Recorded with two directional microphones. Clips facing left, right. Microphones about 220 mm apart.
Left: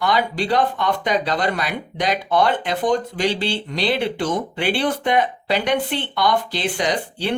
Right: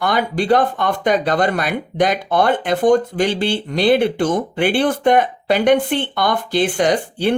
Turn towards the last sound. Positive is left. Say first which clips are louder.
# right 6 dB
turn(degrees=-50)  # may be behind; listen again after turning